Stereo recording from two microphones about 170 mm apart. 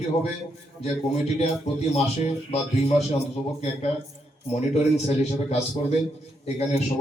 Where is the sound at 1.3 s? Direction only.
40° left (ahead or behind).